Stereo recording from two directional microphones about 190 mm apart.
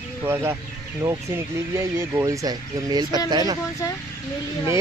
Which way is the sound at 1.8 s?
15° right (ahead or behind).